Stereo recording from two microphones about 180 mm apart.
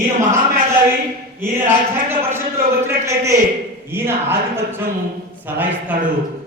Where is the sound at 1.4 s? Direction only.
15° right (ahead or behind).